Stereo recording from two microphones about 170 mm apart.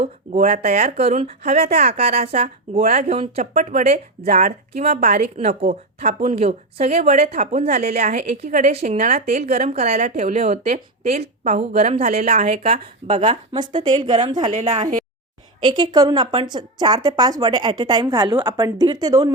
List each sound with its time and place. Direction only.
0.0 s a woman's voice: 40° right (ahead or behind)
15.6 s a woman's voice: 25° right (ahead or behind)